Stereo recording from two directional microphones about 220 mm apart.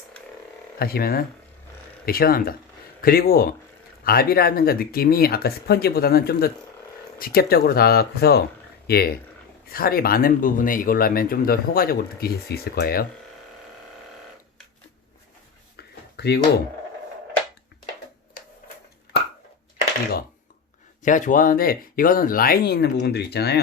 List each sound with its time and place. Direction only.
0.8 s speech: 45° left (ahead or behind)
16.1 s speech: 50° left (ahead or behind)
21.0 s speech: 35° left (ahead or behind)